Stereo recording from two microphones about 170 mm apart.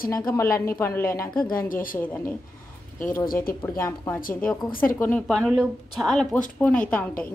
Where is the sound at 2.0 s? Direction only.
10° left (ahead or behind).